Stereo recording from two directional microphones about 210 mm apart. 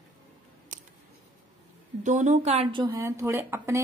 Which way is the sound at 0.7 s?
35° right (ahead or behind).